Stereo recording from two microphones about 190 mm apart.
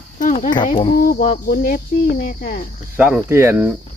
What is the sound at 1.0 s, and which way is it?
Speech, 45° left (ahead or behind).